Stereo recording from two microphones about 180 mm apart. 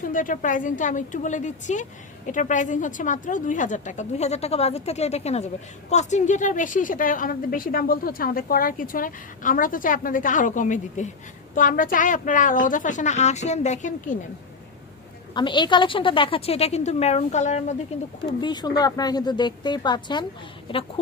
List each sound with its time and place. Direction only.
0.0 s a woman's voice: 45° left (ahead or behind)
15.4 s a woman's voice: 25° left (ahead or behind)
18.3 s a woman's voice: 25° left (ahead or behind)